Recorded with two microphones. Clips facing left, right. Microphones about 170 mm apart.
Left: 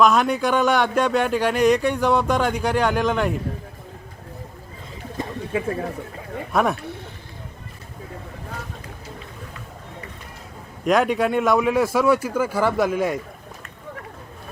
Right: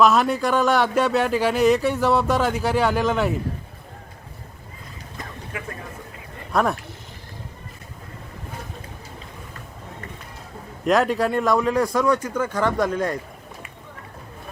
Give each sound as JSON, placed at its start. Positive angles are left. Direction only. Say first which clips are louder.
{"t": 0.0, "sound": "speech", "louder": "even", "side_deg": 0}
{"t": 5.2, "sound": "a sound", "louder": "left 9 dB", "side_deg": 25}
{"t": 5.5, "sound": "speech", "louder": "left 11 dB", "side_deg": 30}
{"t": 6.5, "sound": "speech", "louder": "left 1 dB", "side_deg": 0}
{"t": 10.8, "sound": "speech", "louder": "left 1 dB", "side_deg": 0}